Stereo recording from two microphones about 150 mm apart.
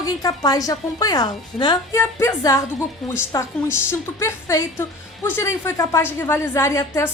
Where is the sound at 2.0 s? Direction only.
20° left (ahead or behind).